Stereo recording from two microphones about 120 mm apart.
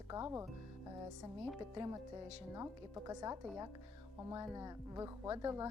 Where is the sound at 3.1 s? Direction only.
30° right (ahead or behind).